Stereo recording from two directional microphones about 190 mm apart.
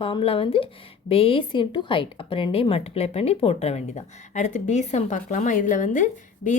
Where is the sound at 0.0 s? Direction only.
30° left (ahead or behind).